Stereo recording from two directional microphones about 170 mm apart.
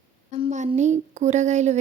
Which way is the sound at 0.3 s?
40° right (ahead or behind).